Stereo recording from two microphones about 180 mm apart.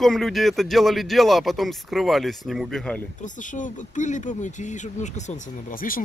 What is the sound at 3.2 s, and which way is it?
Speech, 45° left (ahead or behind).